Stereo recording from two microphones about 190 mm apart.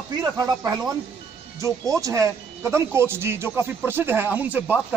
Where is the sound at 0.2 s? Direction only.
20° right (ahead or behind).